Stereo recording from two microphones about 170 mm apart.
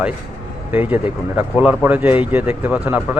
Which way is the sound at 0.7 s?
10° right (ahead or behind).